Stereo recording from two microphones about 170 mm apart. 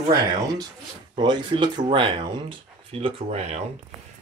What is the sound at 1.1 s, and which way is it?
Speech, 25° right (ahead or behind).